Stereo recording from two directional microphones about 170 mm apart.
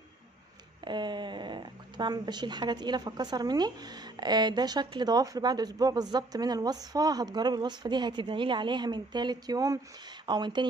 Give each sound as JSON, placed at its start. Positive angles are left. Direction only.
{"t": 0.8, "sound": "speech", "side_deg": -25}